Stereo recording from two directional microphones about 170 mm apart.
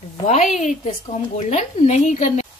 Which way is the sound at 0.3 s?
45° left (ahead or behind).